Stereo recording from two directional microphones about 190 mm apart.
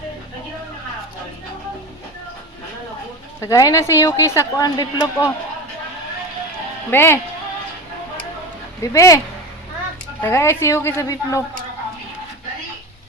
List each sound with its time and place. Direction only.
3.4 s a woman's voice: 15° left (ahead or behind)
6.9 s a woman's voice: 10° left (ahead or behind)
8.8 s a woman's voice: 15° left (ahead or behind)